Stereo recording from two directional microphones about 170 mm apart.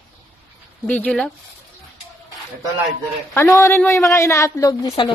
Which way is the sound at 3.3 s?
15° left (ahead or behind).